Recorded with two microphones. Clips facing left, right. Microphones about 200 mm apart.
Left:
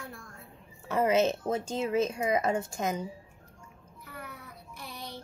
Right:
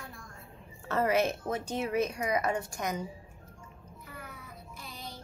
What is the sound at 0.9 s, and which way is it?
Speech, 20° left (ahead or behind).